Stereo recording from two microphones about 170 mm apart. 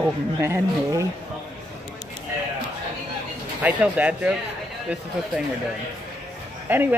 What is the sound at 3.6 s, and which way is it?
Speech, 10° right (ahead or behind).